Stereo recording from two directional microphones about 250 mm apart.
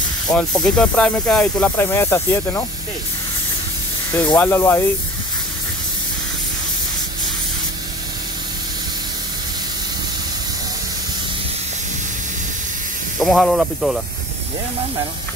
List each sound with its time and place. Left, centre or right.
0.3 s speech: centre
4.4 s speech: centre
13.2 s speech: centre